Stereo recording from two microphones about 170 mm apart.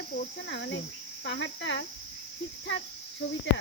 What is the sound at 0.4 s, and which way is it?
Speech, 90° left.